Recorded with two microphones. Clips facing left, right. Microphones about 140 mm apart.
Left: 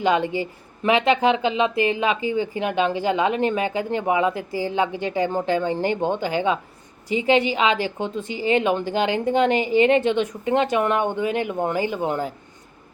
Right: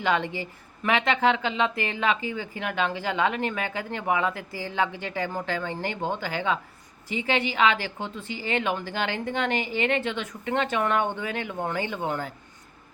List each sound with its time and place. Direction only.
0.0 s speech: 20° left (ahead or behind)